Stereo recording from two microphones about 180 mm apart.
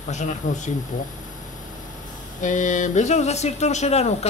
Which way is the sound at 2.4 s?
45° left (ahead or behind).